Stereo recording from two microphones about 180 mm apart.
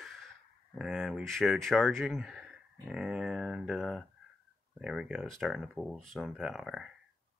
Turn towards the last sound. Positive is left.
turn(degrees=0)  # may be behind; listen again after turning